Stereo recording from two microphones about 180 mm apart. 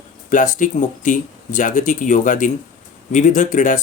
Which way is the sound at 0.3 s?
45° left (ahead or behind).